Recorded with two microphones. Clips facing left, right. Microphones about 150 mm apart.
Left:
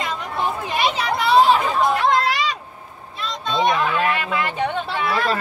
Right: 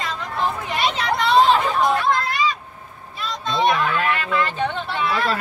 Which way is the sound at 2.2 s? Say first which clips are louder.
Even; 90° left.